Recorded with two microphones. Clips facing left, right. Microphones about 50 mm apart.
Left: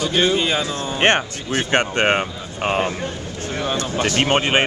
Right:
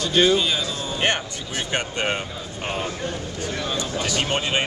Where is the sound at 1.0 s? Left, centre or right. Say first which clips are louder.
Left 7 dB; left.